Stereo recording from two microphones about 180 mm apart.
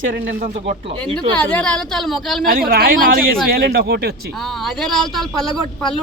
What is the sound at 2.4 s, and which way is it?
Speech, 55° right (ahead or behind).